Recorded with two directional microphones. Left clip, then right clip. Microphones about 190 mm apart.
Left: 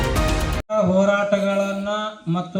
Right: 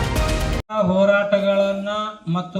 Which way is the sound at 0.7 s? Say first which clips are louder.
Right 1 dB; 55° left (ahead or behind).